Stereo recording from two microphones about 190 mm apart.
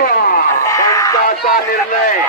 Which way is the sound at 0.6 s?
15° left (ahead or behind).